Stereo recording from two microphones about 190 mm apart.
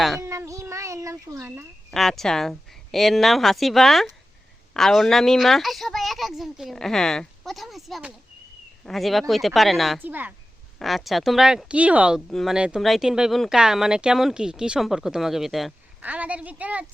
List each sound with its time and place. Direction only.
0.2 s a child's voice: 15° right (ahead or behind)
1.9 s speech: centre (ahead or behind)